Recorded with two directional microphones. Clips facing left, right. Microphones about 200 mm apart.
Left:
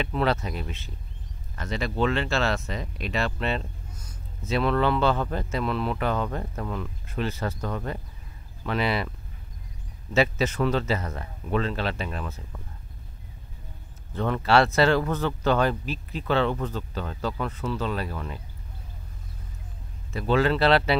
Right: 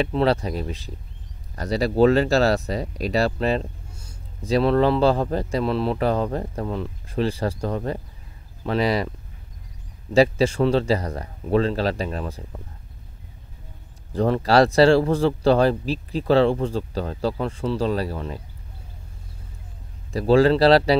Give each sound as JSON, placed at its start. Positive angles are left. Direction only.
{"t": 0.0, "sound": "speech", "side_deg": -35}
{"t": 10.1, "sound": "speech", "side_deg": -35}
{"t": 14.1, "sound": "speech", "side_deg": -35}
{"t": 20.1, "sound": "speech", "side_deg": -35}